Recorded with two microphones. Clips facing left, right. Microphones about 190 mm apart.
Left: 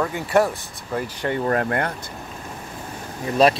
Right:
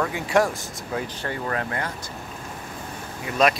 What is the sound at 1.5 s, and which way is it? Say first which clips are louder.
Speech: left 6 dB; 50° left (ahead or behind).